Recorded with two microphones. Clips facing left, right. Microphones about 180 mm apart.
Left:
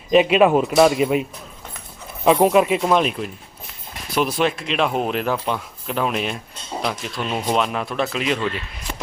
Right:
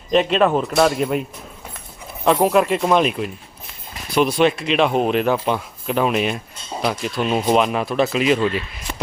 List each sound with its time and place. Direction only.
0.1 s speech: 5° left (ahead or behind)
2.2 s speech: 5° left (ahead or behind)